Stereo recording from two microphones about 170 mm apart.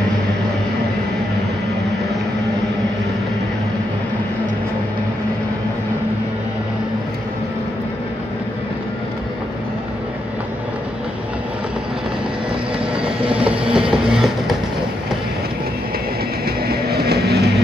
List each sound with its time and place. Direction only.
13.0 s vehicle: 5° right (ahead or behind)
16.4 s train: 65° right (ahead or behind)